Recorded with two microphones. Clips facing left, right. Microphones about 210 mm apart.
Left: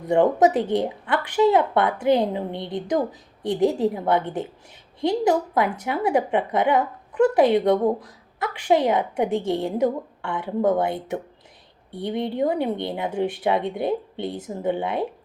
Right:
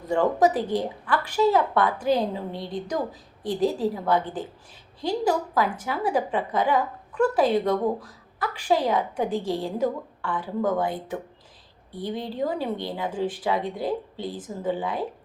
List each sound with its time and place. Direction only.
0.1 s a woman's voice: 20° left (ahead or behind)